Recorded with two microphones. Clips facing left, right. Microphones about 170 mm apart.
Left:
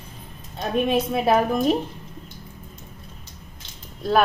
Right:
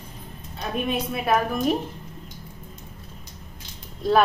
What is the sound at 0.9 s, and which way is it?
Speech, 25° left (ahead or behind).